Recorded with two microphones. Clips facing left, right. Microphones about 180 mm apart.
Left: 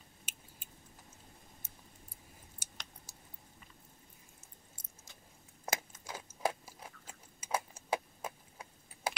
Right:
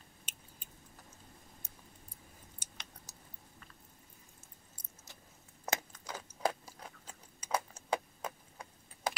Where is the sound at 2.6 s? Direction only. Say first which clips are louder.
Left 1 dB; 10° left (ahead or behind).